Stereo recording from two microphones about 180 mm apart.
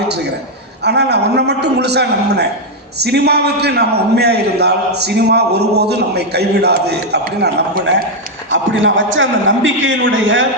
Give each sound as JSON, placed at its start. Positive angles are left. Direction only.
{"t": 0.9, "sound": "a man's voice", "side_deg": -70}
{"t": 8.8, "sound": "a man's voice", "side_deg": -90}